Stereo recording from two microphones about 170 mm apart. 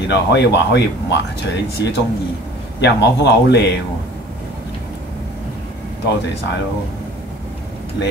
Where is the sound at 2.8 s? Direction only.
90° left.